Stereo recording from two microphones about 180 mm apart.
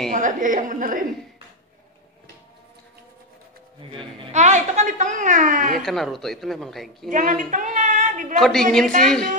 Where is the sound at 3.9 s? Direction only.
30° right (ahead or behind).